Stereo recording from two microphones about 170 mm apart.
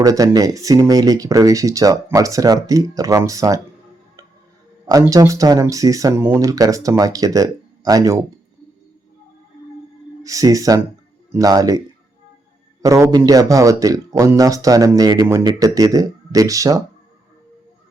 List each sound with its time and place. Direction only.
0.0 s speech: 20° right (ahead or behind)
4.9 s speech: 20° right (ahead or behind)
10.2 s speech: 20° right (ahead or behind)
12.8 s speech: 20° right (ahead or behind)